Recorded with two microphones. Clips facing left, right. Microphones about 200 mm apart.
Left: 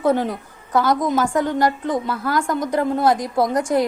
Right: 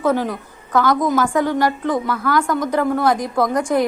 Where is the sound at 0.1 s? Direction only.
25° left (ahead or behind).